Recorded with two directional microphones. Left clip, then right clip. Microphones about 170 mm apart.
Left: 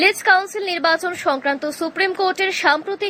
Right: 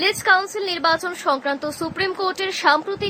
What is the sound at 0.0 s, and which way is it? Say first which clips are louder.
A woman's voice: left 3 dB; 20° left (ahead or behind).